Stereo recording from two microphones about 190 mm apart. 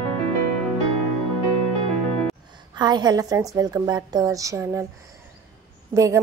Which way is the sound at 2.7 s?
20° right (ahead or behind).